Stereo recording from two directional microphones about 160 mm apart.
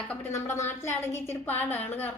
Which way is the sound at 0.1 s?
15° left (ahead or behind).